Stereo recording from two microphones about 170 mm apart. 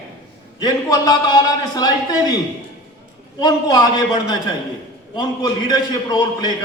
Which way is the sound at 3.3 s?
25° left (ahead or behind).